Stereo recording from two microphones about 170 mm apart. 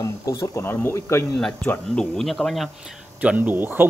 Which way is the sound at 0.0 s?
20° left (ahead or behind).